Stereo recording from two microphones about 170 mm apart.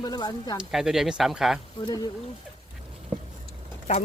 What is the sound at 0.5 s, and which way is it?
Speech, 5° right (ahead or behind).